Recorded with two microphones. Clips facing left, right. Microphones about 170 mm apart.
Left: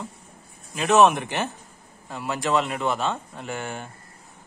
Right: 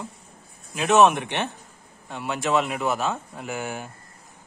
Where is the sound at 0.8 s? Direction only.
Centre (ahead or behind).